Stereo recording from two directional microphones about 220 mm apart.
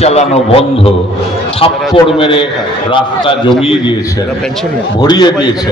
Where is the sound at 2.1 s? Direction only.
25° left (ahead or behind).